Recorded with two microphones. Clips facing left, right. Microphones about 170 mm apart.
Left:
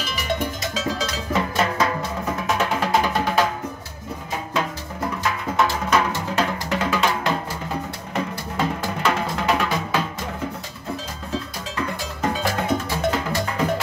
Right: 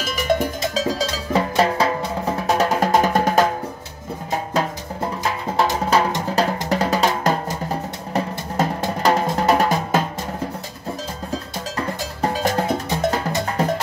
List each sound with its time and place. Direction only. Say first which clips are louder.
0.0 s cowbell: right 6 dB; 45° right (ahead or behind)
0.6 s music: right 4 dB; 35° right (ahead or behind)
5.9 s music: right 2 dB; 35° right (ahead or behind)
11.3 s cowbell: even; 35° right (ahead or behind)
12.5 s music: right 2 dB; 40° right (ahead or behind)